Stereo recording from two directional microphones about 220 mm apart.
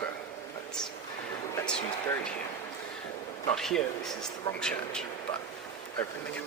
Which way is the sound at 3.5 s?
Centre (ahead or behind).